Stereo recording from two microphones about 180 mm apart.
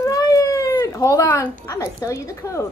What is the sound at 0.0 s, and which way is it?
Speech, 20° left (ahead or behind).